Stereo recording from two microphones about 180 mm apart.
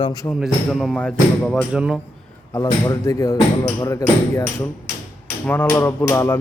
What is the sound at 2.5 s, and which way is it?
Speech, 20° left (ahead or behind).